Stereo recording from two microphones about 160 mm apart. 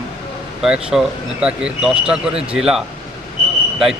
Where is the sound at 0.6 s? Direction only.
5° right (ahead or behind).